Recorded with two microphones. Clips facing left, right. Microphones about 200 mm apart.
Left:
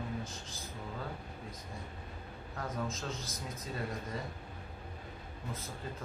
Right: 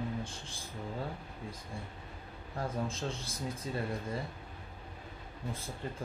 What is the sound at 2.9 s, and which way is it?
Speech, 30° right (ahead or behind).